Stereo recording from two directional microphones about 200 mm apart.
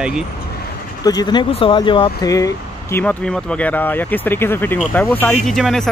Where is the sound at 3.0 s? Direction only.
5° left (ahead or behind).